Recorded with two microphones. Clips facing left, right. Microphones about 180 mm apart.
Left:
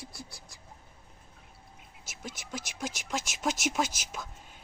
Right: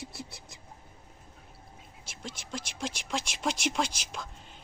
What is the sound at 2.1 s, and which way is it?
Speech, 5° left (ahead or behind).